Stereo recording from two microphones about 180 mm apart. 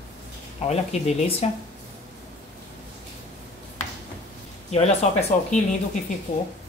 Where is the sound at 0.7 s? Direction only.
35° left (ahead or behind).